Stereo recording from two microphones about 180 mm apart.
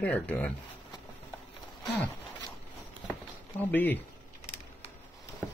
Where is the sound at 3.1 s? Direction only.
10° left (ahead or behind).